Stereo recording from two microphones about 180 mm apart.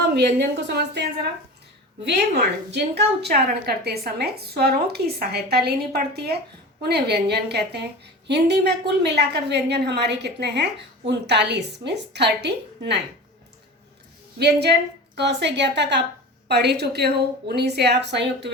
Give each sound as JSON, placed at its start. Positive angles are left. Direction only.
{"t": 0.1, "sound": "a woman's voice", "side_deg": -70}
{"t": 14.3, "sound": "a woman's voice", "side_deg": -65}